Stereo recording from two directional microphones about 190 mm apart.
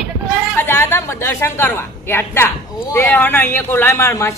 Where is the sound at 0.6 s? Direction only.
10° left (ahead or behind).